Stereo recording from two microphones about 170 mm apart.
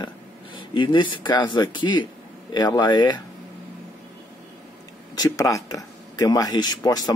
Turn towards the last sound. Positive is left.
turn(degrees=20)  # may be behind; listen again after turning